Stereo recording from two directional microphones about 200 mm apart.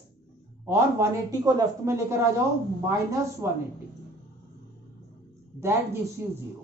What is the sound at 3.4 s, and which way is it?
Speech, 10° right (ahead or behind).